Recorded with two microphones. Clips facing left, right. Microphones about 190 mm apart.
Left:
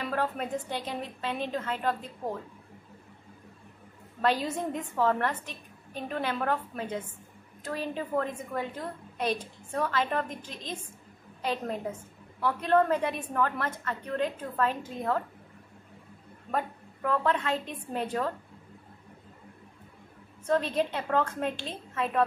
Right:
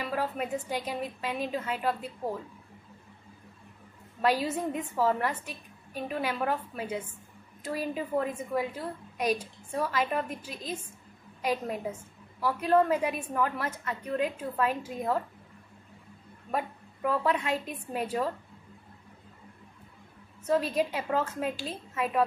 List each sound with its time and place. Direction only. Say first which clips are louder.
0.0 s a woman's voice: left 1 dB; 10° right (ahead or behind)
4.2 s a woman's voice: right 1 dB; 10° right (ahead or behind)
16.5 s a woman's voice: even; 10° right (ahead or behind)
20.4 s a woman's voice: even; 10° right (ahead or behind)